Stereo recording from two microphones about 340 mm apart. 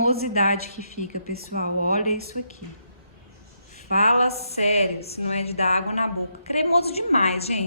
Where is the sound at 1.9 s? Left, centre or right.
Left.